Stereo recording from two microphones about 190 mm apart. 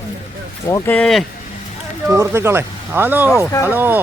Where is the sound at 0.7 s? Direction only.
10° left (ahead or behind).